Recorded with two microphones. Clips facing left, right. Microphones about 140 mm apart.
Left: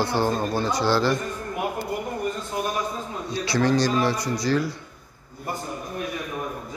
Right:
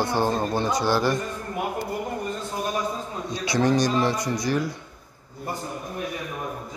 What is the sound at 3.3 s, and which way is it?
A man's voice, 20° right (ahead or behind).